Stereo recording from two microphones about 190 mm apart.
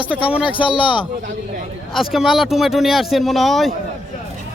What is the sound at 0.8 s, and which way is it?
Speech, 25° left (ahead or behind).